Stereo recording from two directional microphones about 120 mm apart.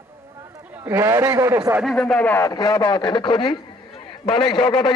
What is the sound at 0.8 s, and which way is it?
Speech, 20° right (ahead or behind).